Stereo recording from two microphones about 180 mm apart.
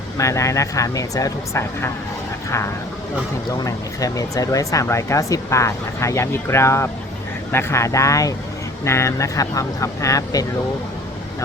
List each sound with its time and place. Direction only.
0.2 s speech: 15° left (ahead or behind)
3.5 s speech: 20° left (ahead or behind)